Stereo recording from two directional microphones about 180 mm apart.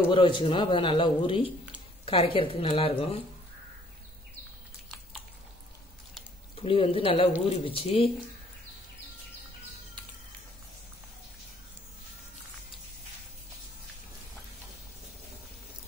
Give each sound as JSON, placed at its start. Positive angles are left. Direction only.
{"t": 0.1, "sound": "speech", "side_deg": 30}
{"t": 6.5, "sound": "speech", "side_deg": 30}